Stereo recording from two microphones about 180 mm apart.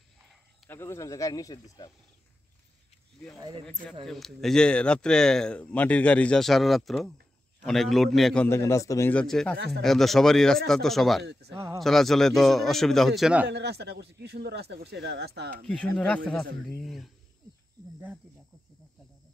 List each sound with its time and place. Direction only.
0.7 s speech: 15° left (ahead or behind)
3.3 s speech: 20° right (ahead or behind)
4.0 s speech: centre (ahead or behind)
8.5 s speech: 15° left (ahead or behind)
9.2 s speech: 5° left (ahead or behind)
11.5 s speech: 15° right (ahead or behind)
11.8 s speech: centre (ahead or behind)
13.5 s a man's voice: 65° right (ahead or behind)
15.6 s speech: 5° left (ahead or behind)